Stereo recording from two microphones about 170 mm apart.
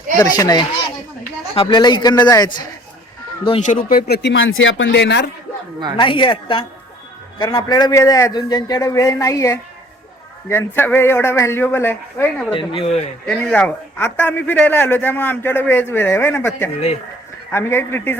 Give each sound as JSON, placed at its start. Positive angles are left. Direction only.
{"t": 0.2, "sound": "a man's voice", "side_deg": 25}
{"t": 3.7, "sound": "speech", "side_deg": 55}
{"t": 6.0, "sound": "a man's voice", "side_deg": 30}
{"t": 12.5, "sound": "speech", "side_deg": 30}
{"t": 13.2, "sound": "a man's voice", "side_deg": 5}